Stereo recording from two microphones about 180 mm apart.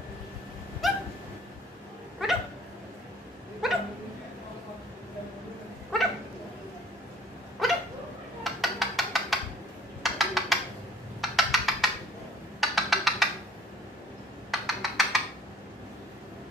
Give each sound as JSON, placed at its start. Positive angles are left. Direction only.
{"t": 0.8, "sound": "dog", "side_deg": 0}
{"t": 3.6, "sound": "dog", "side_deg": 0}
{"t": 5.9, "sound": "dog", "side_deg": 5}
{"t": 7.6, "sound": "dog", "side_deg": 0}
{"t": 8.5, "sound": "a sound", "side_deg": 0}
{"t": 14.5, "sound": "computer keyboard", "side_deg": 0}